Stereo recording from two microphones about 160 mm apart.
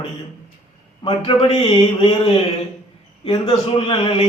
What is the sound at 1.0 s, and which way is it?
Speech, 35° left (ahead or behind).